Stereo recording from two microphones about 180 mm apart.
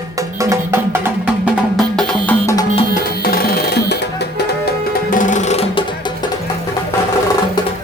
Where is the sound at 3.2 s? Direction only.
55° left (ahead or behind).